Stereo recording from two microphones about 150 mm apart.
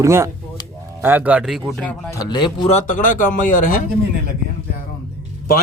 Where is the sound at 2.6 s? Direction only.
55° left (ahead or behind).